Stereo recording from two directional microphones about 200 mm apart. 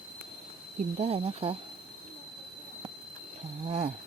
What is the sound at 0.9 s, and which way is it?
Speech, 30° right (ahead or behind).